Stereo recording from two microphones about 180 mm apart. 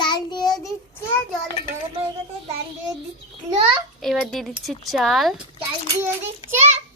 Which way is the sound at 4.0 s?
Centre (ahead or behind).